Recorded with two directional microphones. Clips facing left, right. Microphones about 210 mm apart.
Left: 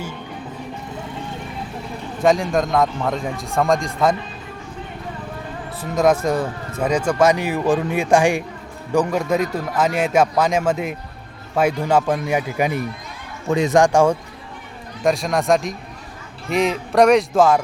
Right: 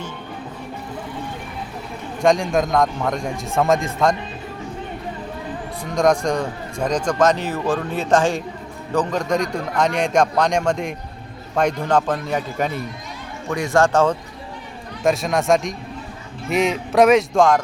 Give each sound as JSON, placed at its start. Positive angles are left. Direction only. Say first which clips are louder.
{"t": 2.2, "sound": "a man's voice", "louder": "even", "side_deg": 0}
{"t": 5.8, "sound": "a man's voice", "louder": "left 1 dB", "side_deg": 5}
{"t": 13.5, "sound": "speech", "louder": "left 3 dB", "side_deg": 20}
{"t": 15.0, "sound": "a man's voice", "louder": "even", "side_deg": 0}